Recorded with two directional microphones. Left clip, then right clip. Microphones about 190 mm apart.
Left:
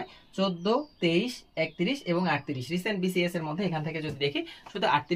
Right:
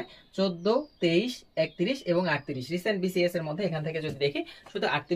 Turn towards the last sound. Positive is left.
turn(degrees=15)  # may be behind; listen again after turning